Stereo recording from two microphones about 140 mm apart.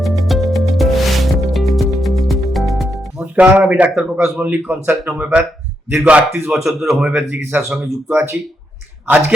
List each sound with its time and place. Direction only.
0.0 s music: centre (ahead or behind)
3.3 s speech: 10° right (ahead or behind)